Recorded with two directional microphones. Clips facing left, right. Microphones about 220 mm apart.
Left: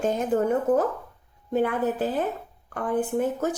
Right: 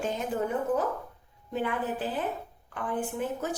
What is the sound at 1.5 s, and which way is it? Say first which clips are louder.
Speech: left 7 dB; 45° left (ahead or behind).